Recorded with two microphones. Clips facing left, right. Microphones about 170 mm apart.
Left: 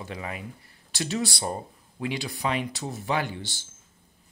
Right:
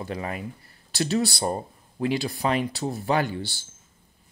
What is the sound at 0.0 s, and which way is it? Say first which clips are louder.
Speech: right 4 dB; 40° right (ahead or behind).